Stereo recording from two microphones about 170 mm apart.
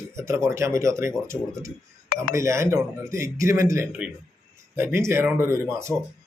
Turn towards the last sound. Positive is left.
turn(degrees=-15)  # may be behind; listen again after turning